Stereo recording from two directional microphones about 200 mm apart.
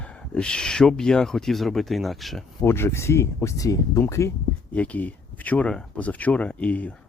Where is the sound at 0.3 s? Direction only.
5° left (ahead or behind).